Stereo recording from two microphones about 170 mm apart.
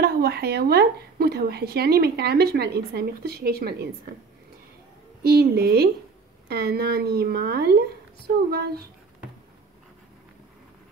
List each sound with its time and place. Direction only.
0.0 s speech: 65° right (ahead or behind)
5.2 s a woman's voice: 65° right (ahead or behind)